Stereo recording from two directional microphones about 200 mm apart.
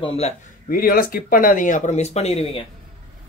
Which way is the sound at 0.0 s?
30° left (ahead or behind).